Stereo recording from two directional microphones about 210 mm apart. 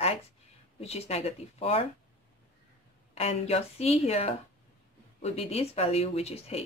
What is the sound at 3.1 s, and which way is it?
Speech, 30° left (ahead or behind).